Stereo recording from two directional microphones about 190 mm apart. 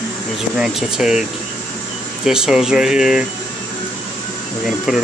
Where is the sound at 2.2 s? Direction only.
5° right (ahead or behind).